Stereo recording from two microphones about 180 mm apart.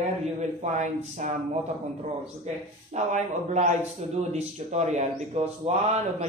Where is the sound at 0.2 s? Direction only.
40° right (ahead or behind).